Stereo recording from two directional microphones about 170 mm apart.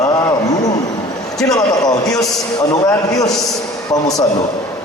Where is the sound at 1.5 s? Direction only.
20° left (ahead or behind).